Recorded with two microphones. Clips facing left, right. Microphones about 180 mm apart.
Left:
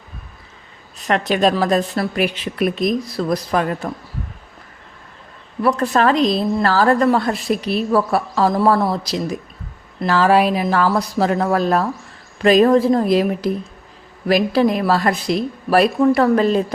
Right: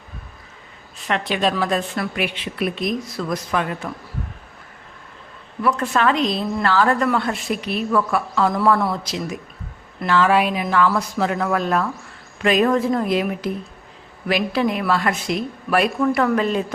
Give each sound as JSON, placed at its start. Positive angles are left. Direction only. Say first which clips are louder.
{"t": 0.9, "sound": "a woman's voice", "louder": "left 5 dB", "side_deg": 45}
{"t": 5.6, "sound": "a woman's voice", "louder": "left 3 dB", "side_deg": 35}